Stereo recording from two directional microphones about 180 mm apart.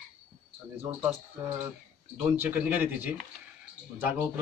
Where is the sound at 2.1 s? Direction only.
10° right (ahead or behind).